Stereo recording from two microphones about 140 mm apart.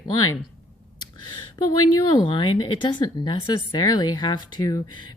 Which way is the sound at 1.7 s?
30° left (ahead or behind).